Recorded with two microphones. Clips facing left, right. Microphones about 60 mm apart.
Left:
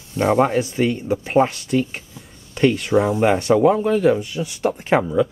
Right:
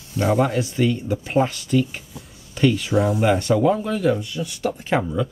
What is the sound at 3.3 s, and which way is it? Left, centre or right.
Speech, left.